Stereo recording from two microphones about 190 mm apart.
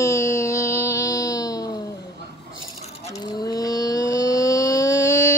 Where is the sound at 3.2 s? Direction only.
20° left (ahead or behind).